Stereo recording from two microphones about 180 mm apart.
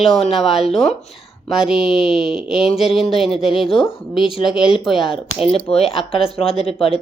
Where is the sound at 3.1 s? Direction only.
35° left (ahead or behind).